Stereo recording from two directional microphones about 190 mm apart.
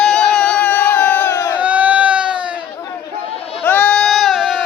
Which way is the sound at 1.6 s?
5° right (ahead or behind).